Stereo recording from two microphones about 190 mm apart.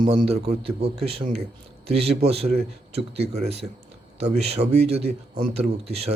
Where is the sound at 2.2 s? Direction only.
35° right (ahead or behind).